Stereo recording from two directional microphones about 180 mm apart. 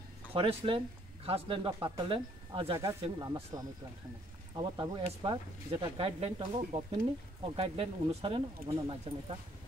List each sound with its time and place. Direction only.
0.3 s speech: 30° right (ahead or behind)
2.8 s speech: 20° right (ahead or behind)